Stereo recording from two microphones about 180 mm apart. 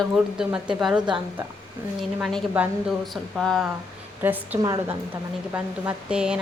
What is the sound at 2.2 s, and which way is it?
A woman's voice, centre (ahead or behind).